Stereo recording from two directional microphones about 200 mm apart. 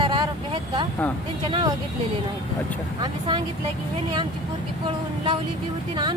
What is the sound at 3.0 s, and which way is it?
Speech, 20° right (ahead or behind).